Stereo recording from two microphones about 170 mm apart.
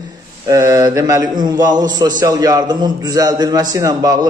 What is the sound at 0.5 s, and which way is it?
A man's voice, 20° right (ahead or behind).